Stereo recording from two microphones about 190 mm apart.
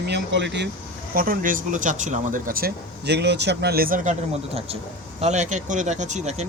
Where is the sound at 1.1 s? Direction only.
50° right (ahead or behind).